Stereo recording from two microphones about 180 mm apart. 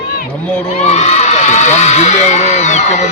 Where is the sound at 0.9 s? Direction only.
40° left (ahead or behind).